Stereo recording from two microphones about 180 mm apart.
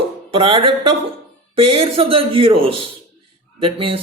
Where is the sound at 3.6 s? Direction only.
30° right (ahead or behind).